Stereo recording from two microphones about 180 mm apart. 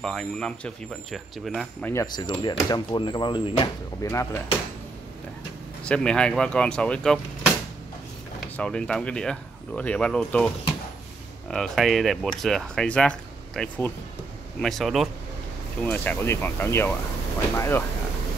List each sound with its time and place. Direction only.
0.0 s speech: 5° left (ahead or behind)
2.1 s speech: 25° left (ahead or behind)
4.0 s speech: 15° left (ahead or behind)
5.9 s speech: 5° left (ahead or behind)
8.4 s speech: 5° left (ahead or behind)